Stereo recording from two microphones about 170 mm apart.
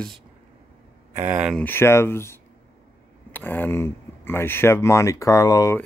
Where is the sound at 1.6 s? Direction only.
15° left (ahead or behind).